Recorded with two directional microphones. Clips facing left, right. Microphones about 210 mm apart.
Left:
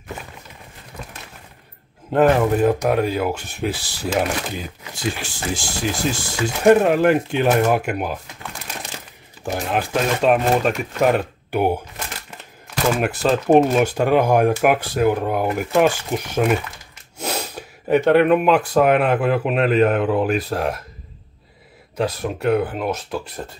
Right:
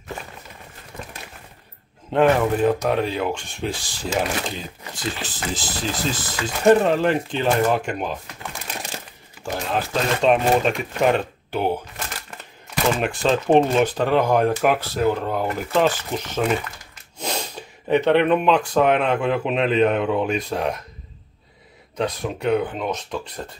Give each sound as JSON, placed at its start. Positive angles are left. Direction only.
{"t": 2.1, "sound": "speech", "side_deg": 10}
{"t": 12.9, "sound": "speech", "side_deg": 5}
{"t": 21.9, "sound": "speech", "side_deg": 5}